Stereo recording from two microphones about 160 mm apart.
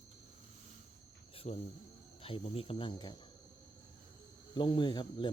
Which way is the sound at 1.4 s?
40° left (ahead or behind).